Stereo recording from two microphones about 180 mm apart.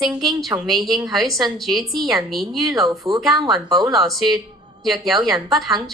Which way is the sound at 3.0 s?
25° right (ahead or behind).